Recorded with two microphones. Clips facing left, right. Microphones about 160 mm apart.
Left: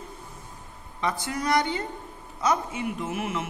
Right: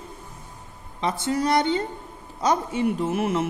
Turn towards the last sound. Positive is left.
turn(degrees=-35)  # may be behind; listen again after turning